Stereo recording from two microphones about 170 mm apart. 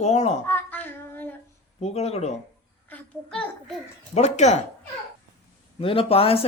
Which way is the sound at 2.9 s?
5° left (ahead or behind).